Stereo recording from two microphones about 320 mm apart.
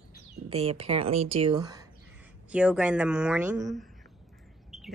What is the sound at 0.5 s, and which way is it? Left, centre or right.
Speech, centre.